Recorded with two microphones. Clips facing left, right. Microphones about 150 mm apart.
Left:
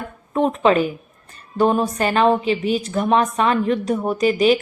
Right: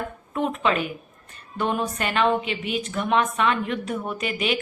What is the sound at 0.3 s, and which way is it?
A woman's voice, 35° left (ahead or behind).